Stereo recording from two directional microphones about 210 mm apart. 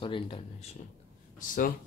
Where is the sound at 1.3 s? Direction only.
40° left (ahead or behind).